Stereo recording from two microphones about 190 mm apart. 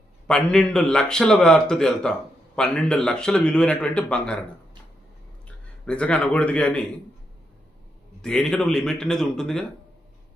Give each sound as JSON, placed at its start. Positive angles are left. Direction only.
{"t": 0.3, "sound": "a man's voice", "side_deg": 5}
{"t": 5.9, "sound": "a man's voice", "side_deg": 5}
{"t": 8.2, "sound": "a man's voice", "side_deg": 5}